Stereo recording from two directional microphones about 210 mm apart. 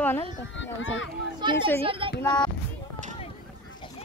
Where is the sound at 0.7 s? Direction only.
65° left (ahead or behind).